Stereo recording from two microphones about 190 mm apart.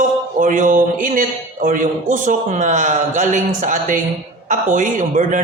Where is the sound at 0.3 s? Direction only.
45° right (ahead or behind).